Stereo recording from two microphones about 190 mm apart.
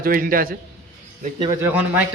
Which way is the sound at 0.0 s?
50° right (ahead or behind).